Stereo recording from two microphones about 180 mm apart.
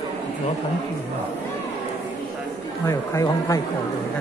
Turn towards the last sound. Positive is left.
turn(degrees=15)  # may be behind; listen again after turning